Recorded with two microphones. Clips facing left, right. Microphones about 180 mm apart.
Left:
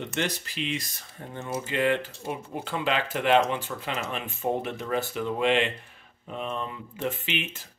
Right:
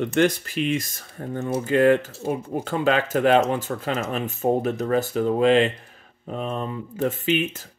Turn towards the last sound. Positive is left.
turn(degrees=-40)  # may be behind; listen again after turning